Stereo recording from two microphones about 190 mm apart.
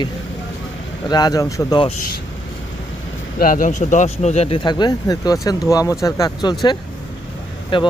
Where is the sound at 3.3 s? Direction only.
45° left (ahead or behind).